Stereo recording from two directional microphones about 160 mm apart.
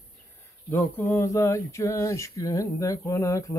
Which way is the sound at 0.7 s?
15° left (ahead or behind).